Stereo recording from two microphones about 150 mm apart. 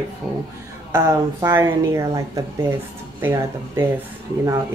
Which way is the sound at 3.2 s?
15° right (ahead or behind).